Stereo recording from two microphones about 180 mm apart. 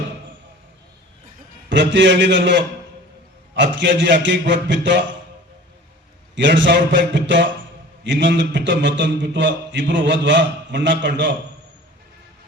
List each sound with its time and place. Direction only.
1.7 s a man's voice: 80° right
6.3 s a man's voice: 90° right